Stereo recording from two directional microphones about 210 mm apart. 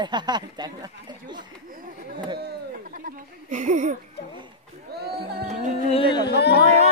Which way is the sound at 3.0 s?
35° right (ahead or behind).